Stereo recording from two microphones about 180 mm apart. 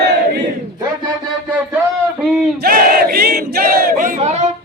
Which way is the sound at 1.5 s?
10° right (ahead or behind).